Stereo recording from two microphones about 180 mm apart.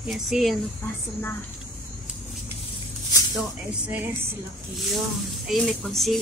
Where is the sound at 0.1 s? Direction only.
Centre (ahead or behind).